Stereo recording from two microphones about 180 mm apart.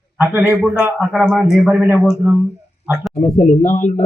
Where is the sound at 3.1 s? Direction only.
40° left (ahead or behind).